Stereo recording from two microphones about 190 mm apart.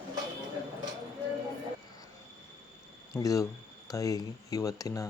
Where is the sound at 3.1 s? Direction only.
15° left (ahead or behind).